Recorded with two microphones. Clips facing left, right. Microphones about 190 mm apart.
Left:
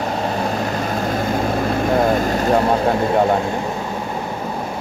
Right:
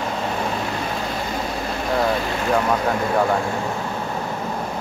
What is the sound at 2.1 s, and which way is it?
Vehicle, 45° left (ahead or behind).